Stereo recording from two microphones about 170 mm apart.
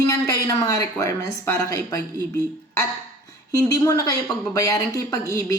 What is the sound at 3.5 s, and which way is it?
Speech, 20° left (ahead or behind).